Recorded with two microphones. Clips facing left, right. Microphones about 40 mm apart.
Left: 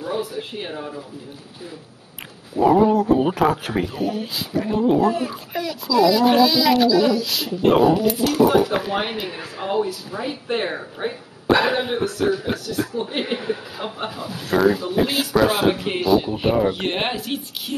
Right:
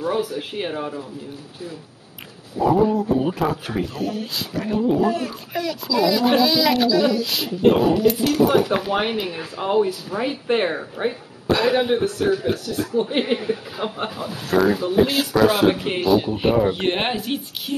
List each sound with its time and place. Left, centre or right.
0.2 s speech: centre
0.6 s a woman's voice: centre
2.6 s speech: left
3.7 s a child's voice: centre
9.8 s a woman's voice: centre
10.7 s a child's voice: centre
11.4 s a sound: centre
12.2 s a child's voice: centre